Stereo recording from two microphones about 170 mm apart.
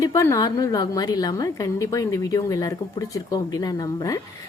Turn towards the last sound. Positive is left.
turn(degrees=20)  # may be behind; listen again after turning